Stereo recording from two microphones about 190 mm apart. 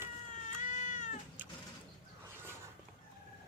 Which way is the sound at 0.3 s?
40° left (ahead or behind).